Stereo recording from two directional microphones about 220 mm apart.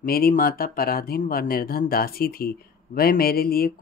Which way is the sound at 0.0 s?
40° left (ahead or behind).